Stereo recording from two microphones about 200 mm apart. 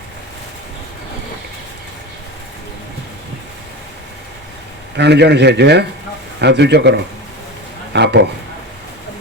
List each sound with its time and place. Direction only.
4.9 s a man's voice: 55° right (ahead or behind)